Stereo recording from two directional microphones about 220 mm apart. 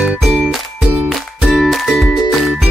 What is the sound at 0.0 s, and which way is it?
Music, centre (ahead or behind).